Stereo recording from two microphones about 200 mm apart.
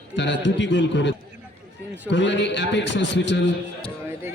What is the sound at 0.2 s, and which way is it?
A man's voice, 65° left (ahead or behind).